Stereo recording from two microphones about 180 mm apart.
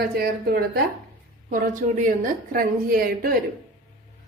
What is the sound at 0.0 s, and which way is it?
Speech, 60° right (ahead or behind).